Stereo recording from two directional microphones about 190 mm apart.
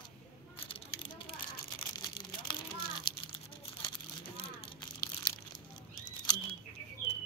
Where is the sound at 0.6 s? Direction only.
25° left (ahead or behind).